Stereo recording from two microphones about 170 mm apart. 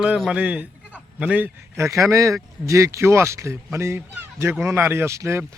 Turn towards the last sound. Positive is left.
turn(degrees=-15)  # may be behind; listen again after turning